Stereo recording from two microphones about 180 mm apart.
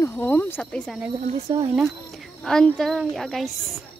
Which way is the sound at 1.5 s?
25° right (ahead or behind).